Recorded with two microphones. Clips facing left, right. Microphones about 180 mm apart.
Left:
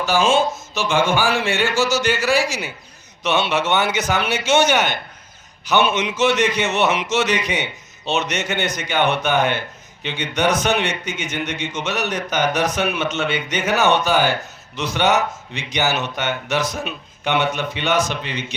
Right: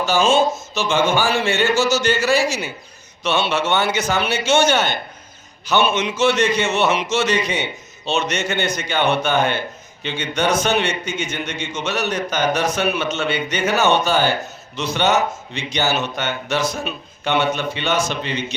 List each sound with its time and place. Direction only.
0.0 s a man's voice: 15° left (ahead or behind)